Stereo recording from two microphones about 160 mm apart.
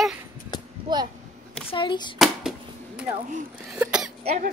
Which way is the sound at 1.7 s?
30° left (ahead or behind).